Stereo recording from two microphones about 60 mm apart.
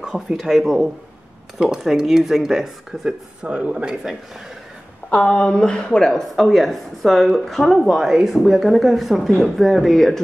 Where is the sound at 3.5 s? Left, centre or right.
Right.